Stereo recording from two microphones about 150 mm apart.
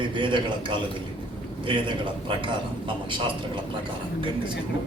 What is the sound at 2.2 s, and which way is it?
A man's voice, 35° right (ahead or behind).